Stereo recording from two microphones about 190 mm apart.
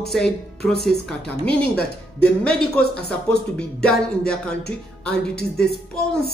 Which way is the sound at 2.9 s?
5° left (ahead or behind).